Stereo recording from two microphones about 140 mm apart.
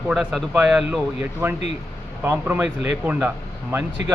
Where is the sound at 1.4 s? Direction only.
15° right (ahead or behind).